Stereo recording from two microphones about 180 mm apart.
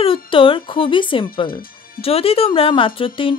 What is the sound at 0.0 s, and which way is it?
Speech, 30° left (ahead or behind).